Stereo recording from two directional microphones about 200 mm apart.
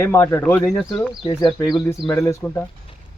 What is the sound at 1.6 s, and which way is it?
Speech, 15° left (ahead or behind).